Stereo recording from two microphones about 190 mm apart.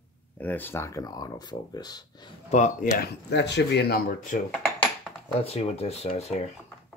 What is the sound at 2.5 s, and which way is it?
Speech, 40° left (ahead or behind).